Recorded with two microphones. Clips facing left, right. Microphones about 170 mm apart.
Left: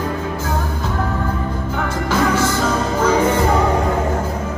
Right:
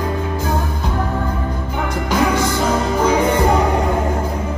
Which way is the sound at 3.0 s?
15° right (ahead or behind).